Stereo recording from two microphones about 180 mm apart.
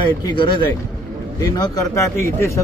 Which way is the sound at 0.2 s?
25° left (ahead or behind).